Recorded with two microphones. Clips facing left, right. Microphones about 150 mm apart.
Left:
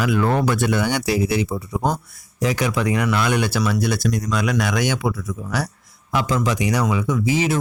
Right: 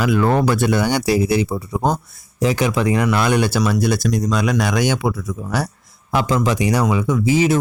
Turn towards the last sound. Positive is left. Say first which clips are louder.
# right 4 dB
turn(degrees=-30)  # may be behind; listen again after turning